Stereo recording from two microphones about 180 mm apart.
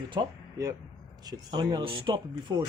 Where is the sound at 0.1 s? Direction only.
20° right (ahead or behind).